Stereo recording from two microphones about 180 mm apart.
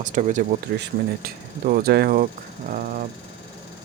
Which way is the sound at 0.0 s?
45° right (ahead or behind).